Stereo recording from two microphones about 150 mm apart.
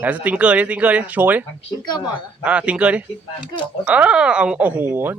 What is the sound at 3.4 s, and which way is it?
Speech, 30° left (ahead or behind).